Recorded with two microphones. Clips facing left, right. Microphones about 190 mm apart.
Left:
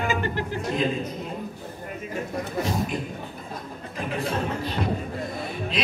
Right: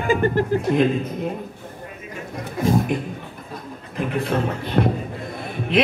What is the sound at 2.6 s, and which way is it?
Speech, 50° right (ahead or behind).